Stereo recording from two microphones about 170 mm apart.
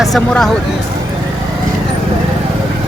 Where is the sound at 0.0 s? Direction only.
Centre (ahead or behind).